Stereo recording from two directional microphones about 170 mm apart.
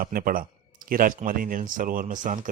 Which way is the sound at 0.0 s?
55° right (ahead or behind).